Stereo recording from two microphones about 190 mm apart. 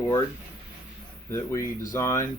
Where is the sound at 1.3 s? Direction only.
15° left (ahead or behind).